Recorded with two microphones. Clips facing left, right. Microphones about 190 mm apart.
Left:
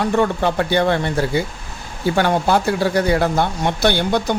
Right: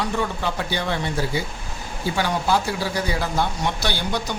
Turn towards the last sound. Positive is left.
turn(degrees=60)  # may be behind; listen again after turning